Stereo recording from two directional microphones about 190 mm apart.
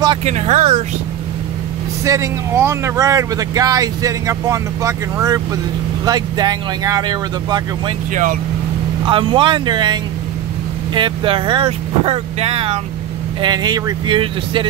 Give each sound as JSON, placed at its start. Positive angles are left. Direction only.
{"t": 0.2, "sound": "speech", "side_deg": -35}
{"t": 2.0, "sound": "speech", "side_deg": -15}
{"t": 8.1, "sound": "speech", "side_deg": -45}
{"t": 9.0, "sound": "speech", "side_deg": -25}
{"t": 11.0, "sound": "speech", "side_deg": -25}